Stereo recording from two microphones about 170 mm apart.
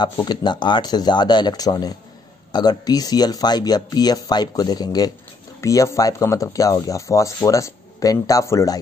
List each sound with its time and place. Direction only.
0.0 s speech: 25° left (ahead or behind)